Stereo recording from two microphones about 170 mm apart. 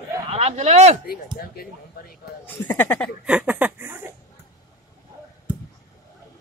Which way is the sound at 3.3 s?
10° right (ahead or behind).